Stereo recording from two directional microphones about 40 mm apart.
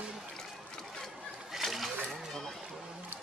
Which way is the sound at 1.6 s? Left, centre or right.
Centre.